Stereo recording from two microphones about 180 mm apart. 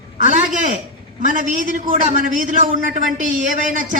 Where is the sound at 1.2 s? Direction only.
45° right (ahead or behind).